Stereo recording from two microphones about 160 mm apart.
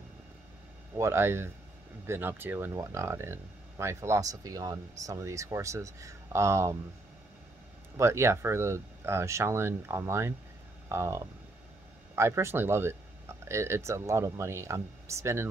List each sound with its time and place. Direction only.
0.9 s speech: 15° right (ahead or behind)
8.0 s speech: 15° right (ahead or behind)